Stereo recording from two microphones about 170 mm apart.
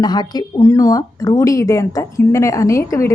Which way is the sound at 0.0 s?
25° left (ahead or behind).